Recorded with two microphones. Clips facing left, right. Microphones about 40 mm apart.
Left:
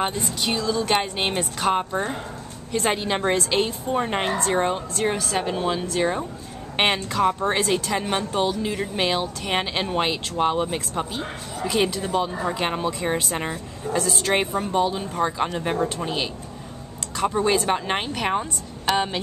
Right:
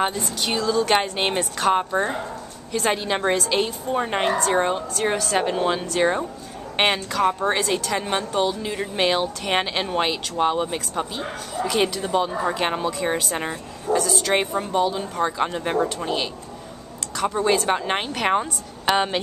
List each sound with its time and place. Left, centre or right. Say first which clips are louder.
0.4 s speech: right 3 dB; centre
1.9 s speech: right 3 dB; centre
2.8 s speech: right 1 dB; centre
5.4 s speech: right 2 dB; centre
6.8 s speech: even; centre
13.9 s speech: right 2 dB; left
14.3 s speech: even; centre
17.2 s speech: even; centre
18.3 s a woman's voice: right 3 dB; centre